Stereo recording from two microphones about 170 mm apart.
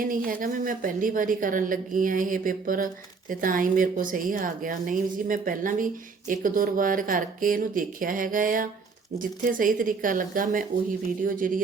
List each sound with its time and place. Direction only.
0.3 s a woman's voice: 55° right (ahead or behind)